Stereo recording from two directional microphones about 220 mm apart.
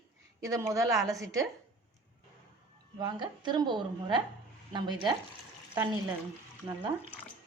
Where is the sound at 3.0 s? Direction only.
20° right (ahead or behind).